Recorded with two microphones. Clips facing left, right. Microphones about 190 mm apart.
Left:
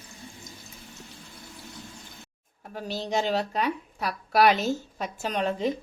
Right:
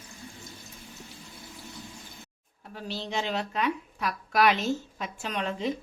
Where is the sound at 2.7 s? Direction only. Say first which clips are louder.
Left 3 dB; 45° left (ahead or behind).